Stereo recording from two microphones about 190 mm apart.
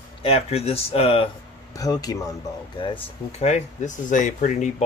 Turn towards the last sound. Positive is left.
turn(degrees=40)  # may be behind; listen again after turning